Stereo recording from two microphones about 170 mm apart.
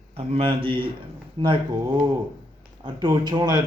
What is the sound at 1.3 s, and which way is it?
Speech, 30° right (ahead or behind).